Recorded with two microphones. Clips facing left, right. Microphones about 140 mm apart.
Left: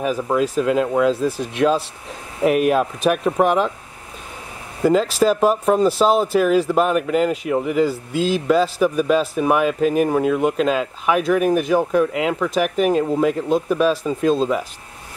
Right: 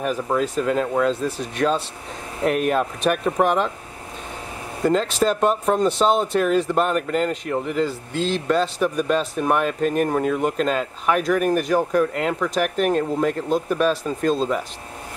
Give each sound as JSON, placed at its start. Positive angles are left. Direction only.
{"t": 0.0, "sound": "speech", "side_deg": 5}
{"t": 4.8, "sound": "speech", "side_deg": 5}